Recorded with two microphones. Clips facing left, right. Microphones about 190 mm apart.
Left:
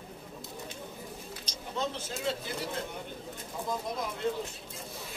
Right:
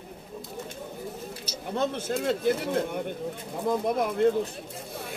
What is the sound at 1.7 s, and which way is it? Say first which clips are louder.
Speech: right 7 dB; 55° right (ahead or behind).